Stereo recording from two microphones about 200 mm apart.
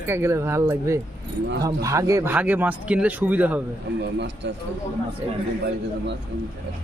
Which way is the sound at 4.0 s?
60° right (ahead or behind).